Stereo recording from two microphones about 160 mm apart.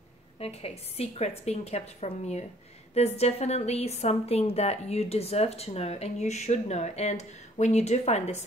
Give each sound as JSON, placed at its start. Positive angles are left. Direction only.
{"t": 0.4, "sound": "a woman's voice", "side_deg": 40}